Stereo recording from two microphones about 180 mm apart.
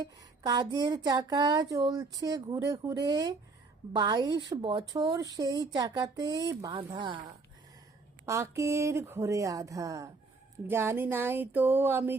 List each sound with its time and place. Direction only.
0.0 s speech: 20° right (ahead or behind)